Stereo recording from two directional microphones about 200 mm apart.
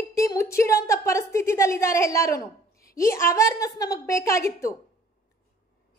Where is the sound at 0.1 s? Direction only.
15° left (ahead or behind).